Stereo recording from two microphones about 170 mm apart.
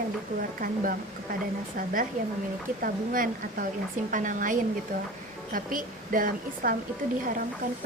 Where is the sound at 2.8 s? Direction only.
55° right (ahead or behind).